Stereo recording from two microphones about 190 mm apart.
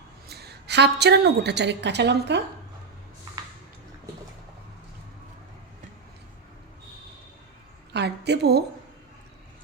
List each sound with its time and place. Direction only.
0.3 s a woman's voice: 60° right (ahead or behind)
7.9 s a woman's voice: 60° right (ahead or behind)